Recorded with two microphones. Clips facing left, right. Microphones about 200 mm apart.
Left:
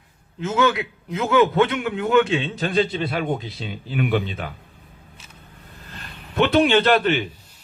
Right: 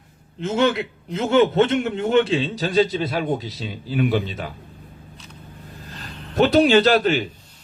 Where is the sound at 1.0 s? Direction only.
30° right (ahead or behind).